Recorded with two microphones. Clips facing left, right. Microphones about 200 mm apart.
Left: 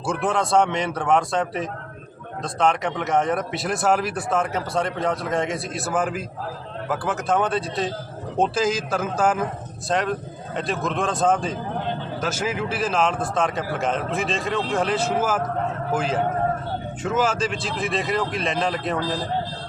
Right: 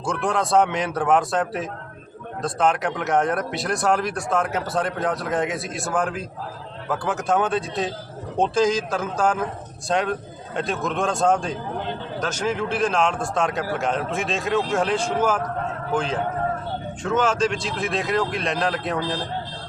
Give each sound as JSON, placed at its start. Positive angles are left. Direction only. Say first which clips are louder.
{"t": 0.0, "sound": "speech", "louder": "left 1 dB", "side_deg": 5}